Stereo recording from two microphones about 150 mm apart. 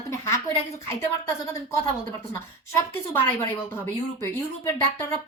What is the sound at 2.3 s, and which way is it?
Speech, 15° left (ahead or behind).